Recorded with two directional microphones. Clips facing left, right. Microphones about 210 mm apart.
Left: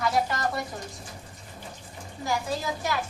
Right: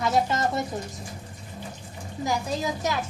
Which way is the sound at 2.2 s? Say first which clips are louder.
Right 2 dB; 20° right (ahead or behind).